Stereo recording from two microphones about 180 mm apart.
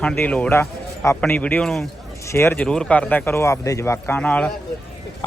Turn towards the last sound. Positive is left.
turn(degrees=10)  # may be behind; listen again after turning